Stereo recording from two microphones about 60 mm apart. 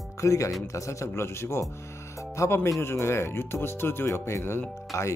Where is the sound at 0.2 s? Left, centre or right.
Left.